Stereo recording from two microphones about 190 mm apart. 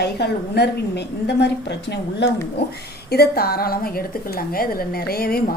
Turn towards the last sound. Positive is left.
turn(degrees=55)  # may be behind; listen again after turning